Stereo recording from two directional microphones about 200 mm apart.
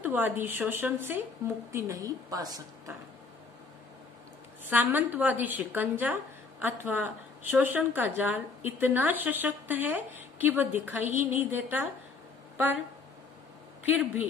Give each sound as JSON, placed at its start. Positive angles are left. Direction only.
{"t": 0.0, "sound": "a woman's voice", "side_deg": -10}
{"t": 4.6, "sound": "a woman's voice", "side_deg": -10}
{"t": 13.8, "sound": "a woman's voice", "side_deg": -10}